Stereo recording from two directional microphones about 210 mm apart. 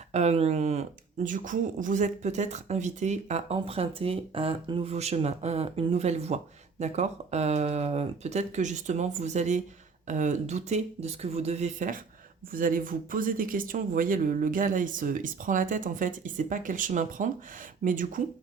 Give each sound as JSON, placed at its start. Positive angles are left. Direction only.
{"t": 0.1, "sound": "speech", "side_deg": -30}